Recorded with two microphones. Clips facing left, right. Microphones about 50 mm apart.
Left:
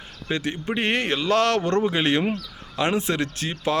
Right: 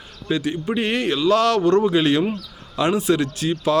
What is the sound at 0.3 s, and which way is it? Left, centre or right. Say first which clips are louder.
Speech: right 4 dB; left.